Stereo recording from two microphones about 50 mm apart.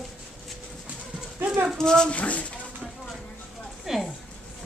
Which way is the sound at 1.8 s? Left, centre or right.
Centre.